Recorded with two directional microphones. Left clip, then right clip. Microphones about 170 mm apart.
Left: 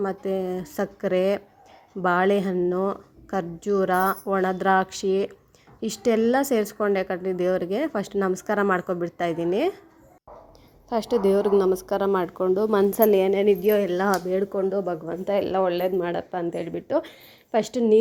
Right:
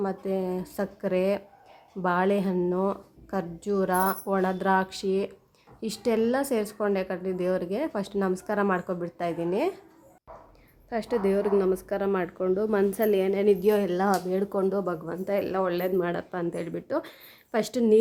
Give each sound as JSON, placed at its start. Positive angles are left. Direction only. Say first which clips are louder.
{"t": 0.0, "sound": "a woman's voice", "louder": "left 3 dB", "side_deg": 20}
{"t": 10.8, "sound": "a woman's voice", "louder": "left 5 dB", "side_deg": 15}
{"t": 15.0, "sound": "speech", "louder": "left 4 dB", "side_deg": 10}